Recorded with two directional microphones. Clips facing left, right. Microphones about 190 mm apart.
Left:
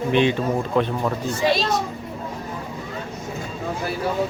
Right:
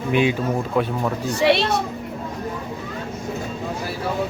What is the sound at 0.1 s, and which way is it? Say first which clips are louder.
Speech: even; 10° right (ahead or behind).